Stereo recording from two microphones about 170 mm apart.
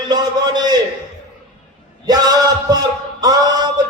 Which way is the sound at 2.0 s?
25° right (ahead or behind).